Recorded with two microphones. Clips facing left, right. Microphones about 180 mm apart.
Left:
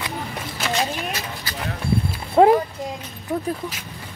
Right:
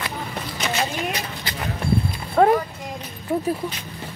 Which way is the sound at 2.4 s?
20° left (ahead or behind).